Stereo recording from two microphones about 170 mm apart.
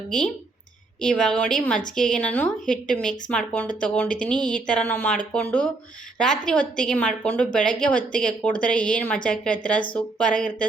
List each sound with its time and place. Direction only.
1.0 s a woman's voice: 5° left (ahead or behind)